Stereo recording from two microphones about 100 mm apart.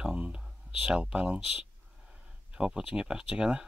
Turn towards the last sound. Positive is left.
turn(degrees=-10)  # may be behind; listen again after turning